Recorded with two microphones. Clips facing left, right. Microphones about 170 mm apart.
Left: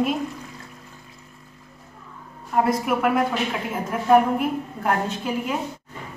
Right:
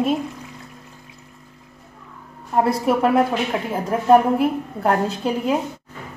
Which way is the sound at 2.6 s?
30° right (ahead or behind).